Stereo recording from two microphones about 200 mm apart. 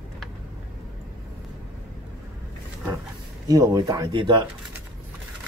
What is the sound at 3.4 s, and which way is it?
Speech, 20° right (ahead or behind).